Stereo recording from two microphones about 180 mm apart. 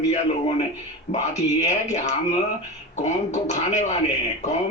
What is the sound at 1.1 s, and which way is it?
Speech, 40° left (ahead or behind).